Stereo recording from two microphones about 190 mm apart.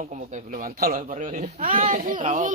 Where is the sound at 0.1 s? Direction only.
45° right (ahead or behind).